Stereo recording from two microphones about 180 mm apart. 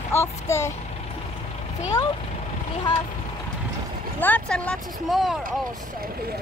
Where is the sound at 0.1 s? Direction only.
15° left (ahead or behind).